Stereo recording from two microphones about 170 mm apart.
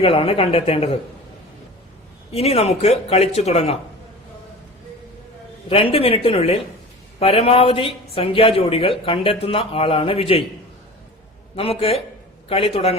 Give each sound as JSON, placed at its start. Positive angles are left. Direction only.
{"t": 0.0, "sound": "speech", "side_deg": 35}
{"t": 2.3, "sound": "speech", "side_deg": 35}
{"t": 5.6, "sound": "speech", "side_deg": 30}
{"t": 11.5, "sound": "speech", "side_deg": 35}